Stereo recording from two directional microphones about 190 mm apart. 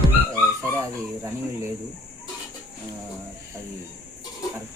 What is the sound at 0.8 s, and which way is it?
Speech, 15° right (ahead or behind).